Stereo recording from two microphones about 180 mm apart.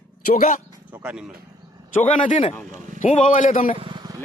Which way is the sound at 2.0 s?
45° left (ahead or behind).